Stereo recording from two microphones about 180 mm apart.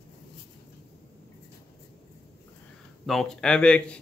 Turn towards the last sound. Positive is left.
turn(degrees=5)  # may be behind; listen again after turning